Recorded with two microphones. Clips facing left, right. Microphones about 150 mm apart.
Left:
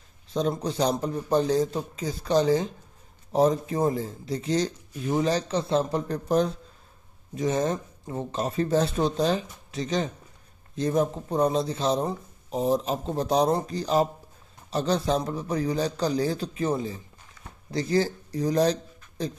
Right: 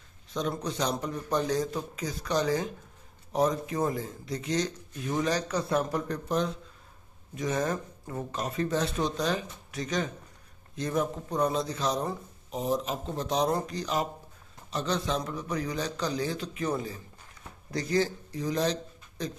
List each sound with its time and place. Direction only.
0.3 s speech: 30° left (ahead or behind)